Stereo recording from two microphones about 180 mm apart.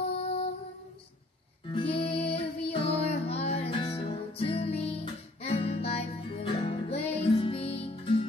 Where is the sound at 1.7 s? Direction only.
30° left (ahead or behind).